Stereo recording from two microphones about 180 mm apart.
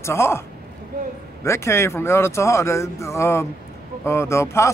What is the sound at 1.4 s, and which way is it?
Speech, 15° left (ahead or behind).